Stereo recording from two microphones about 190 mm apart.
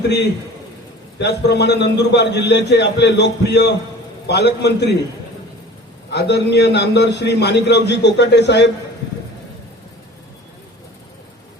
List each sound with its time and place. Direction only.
1.2 s a man's voice: 60° left (ahead or behind)
6.1 s a man's voice: 65° left (ahead or behind)